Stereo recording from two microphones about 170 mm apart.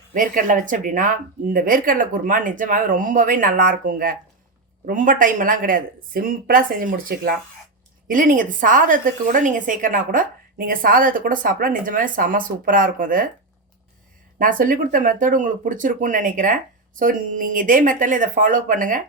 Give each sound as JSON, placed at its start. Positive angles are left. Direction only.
{"t": 0.1, "sound": "a woman's voice", "side_deg": -55}
{"t": 14.3, "sound": "a woman's voice", "side_deg": -50}